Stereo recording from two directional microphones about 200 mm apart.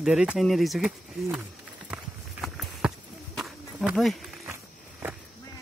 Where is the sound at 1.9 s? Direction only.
Centre (ahead or behind).